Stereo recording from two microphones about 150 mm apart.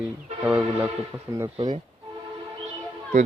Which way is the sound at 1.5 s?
30° right (ahead or behind).